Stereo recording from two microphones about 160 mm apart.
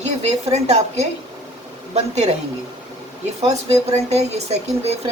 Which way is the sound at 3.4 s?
40° right (ahead or behind).